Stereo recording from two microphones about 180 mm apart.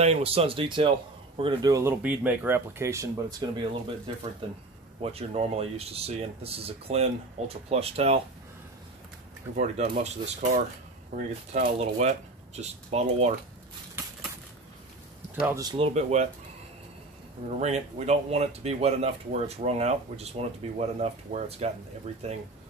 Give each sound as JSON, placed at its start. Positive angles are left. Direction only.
{"t": 0.0, "sound": "speech", "side_deg": -35}
{"t": 9.6, "sound": "speech", "side_deg": -40}
{"t": 15.4, "sound": "speech", "side_deg": -20}
{"t": 15.9, "sound": "speech", "side_deg": -40}
{"t": 17.5, "sound": "speech", "side_deg": -40}